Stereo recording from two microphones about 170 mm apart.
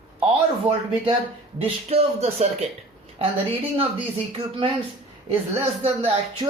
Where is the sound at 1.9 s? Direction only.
35° right (ahead or behind).